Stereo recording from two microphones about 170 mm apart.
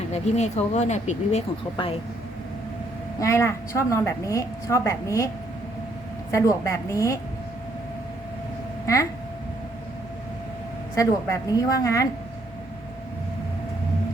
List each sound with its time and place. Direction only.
0.1 s speech: 40° left (ahead or behind)
3.2 s a woman's voice: 15° left (ahead or behind)
6.3 s a woman's voice: 20° left (ahead or behind)
10.9 s a woman's voice: 15° left (ahead or behind)